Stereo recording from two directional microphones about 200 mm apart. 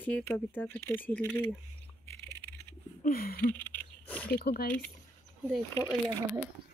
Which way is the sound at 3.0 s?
50° left (ahead or behind).